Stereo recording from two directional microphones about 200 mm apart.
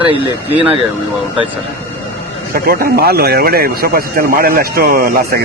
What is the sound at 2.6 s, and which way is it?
A man's voice, 50° right (ahead or behind).